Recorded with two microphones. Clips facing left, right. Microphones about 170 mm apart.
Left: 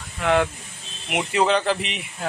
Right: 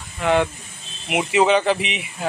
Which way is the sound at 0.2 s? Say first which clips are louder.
Right 1 dB; centre (ahead or behind).